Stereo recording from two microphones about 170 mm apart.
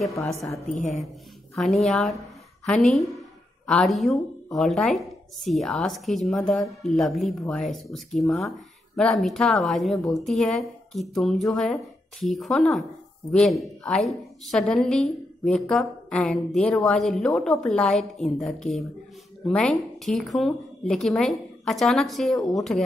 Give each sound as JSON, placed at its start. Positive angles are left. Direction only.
{"t": 0.1, "sound": "a woman's voice", "side_deg": 15}
{"t": 0.7, "sound": "speech", "side_deg": 50}
{"t": 1.5, "sound": "a woman's voice", "side_deg": 0}